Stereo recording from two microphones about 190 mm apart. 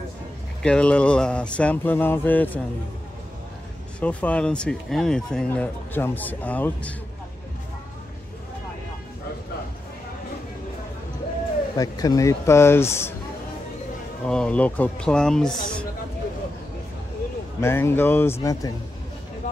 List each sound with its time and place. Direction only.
0.6 s speech: 5° left (ahead or behind)
4.0 s speech: 5° left (ahead or behind)
11.7 s speech: 20° left (ahead or behind)
14.2 s speech: 5° left (ahead or behind)
17.6 s speech: 15° left (ahead or behind)